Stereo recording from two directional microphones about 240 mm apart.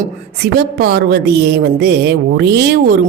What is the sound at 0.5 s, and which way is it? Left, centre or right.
A woman's voice, right.